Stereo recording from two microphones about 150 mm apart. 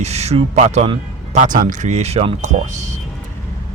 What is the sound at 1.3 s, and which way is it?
Speech, 60° right (ahead or behind).